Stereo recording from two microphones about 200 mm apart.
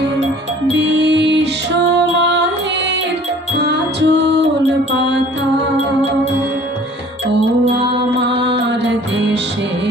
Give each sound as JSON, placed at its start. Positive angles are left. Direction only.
{"t": 0.8, "sound": "music", "side_deg": -60}
{"t": 3.6, "sound": "music", "side_deg": -60}
{"t": 7.8, "sound": "music", "side_deg": -25}